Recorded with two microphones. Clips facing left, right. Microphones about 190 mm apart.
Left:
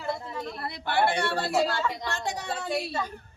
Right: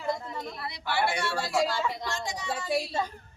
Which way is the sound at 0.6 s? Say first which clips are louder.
Left 4 dB; 55° left (ahead or behind).